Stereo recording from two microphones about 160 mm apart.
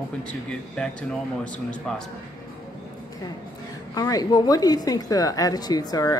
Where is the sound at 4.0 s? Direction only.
25° left (ahead or behind).